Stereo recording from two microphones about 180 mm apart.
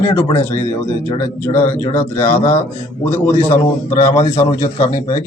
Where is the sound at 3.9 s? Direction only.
40° left (ahead or behind).